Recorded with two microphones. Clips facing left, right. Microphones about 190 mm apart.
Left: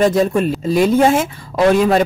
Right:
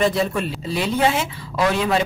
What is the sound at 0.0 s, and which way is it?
Speech, 45° left (ahead or behind).